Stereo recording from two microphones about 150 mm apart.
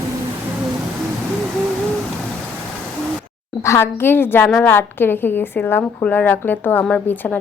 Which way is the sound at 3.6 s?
20° left (ahead or behind).